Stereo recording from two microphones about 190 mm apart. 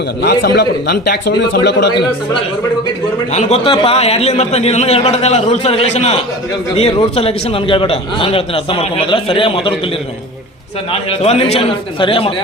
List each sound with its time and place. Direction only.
0.2 s speech: 60° left (ahead or behind)
3.3 s a man's voice: 30° left (ahead or behind)
11.1 s a man's voice: 30° left (ahead or behind)